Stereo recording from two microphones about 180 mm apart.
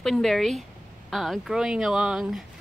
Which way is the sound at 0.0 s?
Centre (ahead or behind).